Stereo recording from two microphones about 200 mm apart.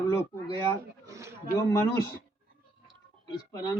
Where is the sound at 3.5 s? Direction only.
20° left (ahead or behind).